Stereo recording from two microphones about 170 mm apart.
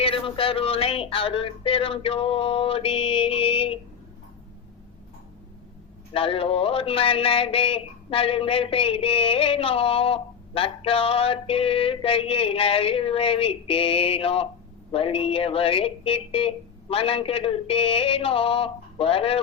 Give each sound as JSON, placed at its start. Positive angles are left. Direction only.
{"t": 0.0, "sound": "speech", "side_deg": 30}
{"t": 6.1, "sound": "speech", "side_deg": 35}